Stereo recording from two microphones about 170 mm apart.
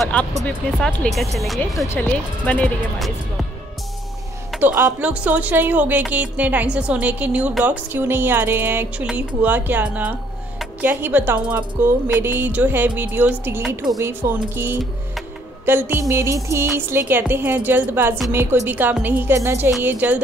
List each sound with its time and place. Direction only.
0.0 s speech: 10° left (ahead or behind)
4.6 s a woman's voice: 15° right (ahead or behind)